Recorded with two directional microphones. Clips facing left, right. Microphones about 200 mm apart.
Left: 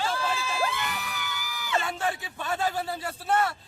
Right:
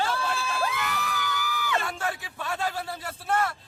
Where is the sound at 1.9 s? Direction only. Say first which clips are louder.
Left 2 dB; 25° left (ahead or behind).